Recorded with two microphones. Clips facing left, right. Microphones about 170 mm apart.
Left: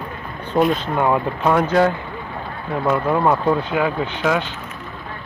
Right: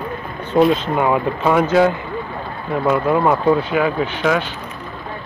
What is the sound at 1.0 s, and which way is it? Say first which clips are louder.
Speech: right 1 dB; 5° right (ahead or behind).